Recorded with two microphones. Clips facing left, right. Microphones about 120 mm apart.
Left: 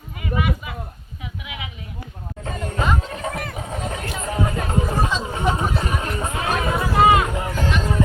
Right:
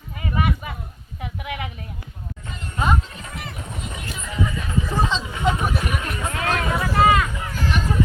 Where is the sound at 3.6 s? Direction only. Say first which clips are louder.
Left 5 dB; 80° left; by 5.1 s 50° left (ahead or behind).